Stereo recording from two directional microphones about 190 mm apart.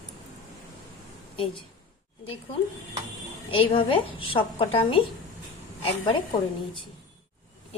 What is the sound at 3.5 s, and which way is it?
A woman's voice, 30° left (ahead or behind).